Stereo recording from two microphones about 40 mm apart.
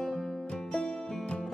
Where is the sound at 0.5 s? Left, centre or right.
Left.